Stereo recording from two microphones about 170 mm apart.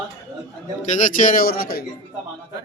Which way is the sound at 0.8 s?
45° left (ahead or behind).